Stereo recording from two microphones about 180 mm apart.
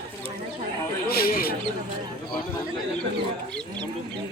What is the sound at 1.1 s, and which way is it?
Mouse, 55° left (ahead or behind).